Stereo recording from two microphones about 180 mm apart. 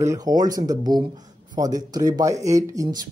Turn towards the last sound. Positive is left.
turn(degrees=-20)  # may be behind; listen again after turning